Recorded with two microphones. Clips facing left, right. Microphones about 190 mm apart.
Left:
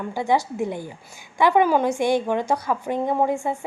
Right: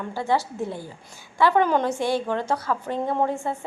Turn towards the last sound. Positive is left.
turn(degrees=10)  # may be behind; listen again after turning